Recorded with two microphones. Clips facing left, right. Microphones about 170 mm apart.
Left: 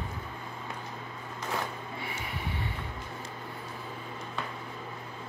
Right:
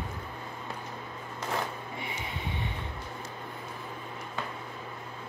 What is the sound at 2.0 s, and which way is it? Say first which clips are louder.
Vehicle: even; 20° right (ahead or behind).